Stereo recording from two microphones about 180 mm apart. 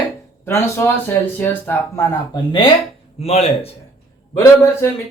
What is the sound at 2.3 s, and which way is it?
A man's voice, 25° left (ahead or behind).